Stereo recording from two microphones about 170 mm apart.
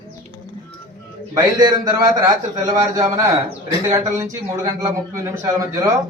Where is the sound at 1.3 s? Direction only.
20° right (ahead or behind).